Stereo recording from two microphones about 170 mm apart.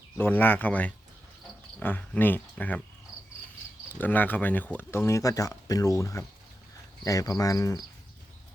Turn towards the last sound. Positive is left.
turn(degrees=20)  # may be behind; listen again after turning